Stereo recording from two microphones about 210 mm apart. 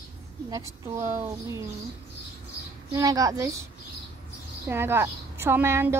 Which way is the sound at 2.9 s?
15° right (ahead or behind).